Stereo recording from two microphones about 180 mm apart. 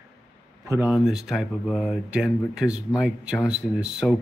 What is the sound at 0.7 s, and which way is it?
Speech, 10° right (ahead or behind).